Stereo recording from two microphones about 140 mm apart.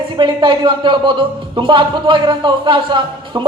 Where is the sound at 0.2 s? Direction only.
35° right (ahead or behind).